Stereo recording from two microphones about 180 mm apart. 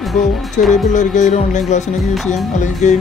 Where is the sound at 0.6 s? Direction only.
45° left (ahead or behind).